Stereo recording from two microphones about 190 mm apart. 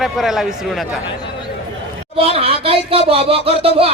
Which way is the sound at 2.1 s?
30° right (ahead or behind).